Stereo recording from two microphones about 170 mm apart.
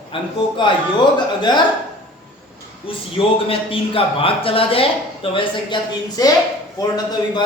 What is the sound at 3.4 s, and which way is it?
Speech, 35° left (ahead or behind).